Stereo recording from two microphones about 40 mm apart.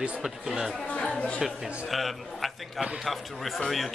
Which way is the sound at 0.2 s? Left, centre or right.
Centre.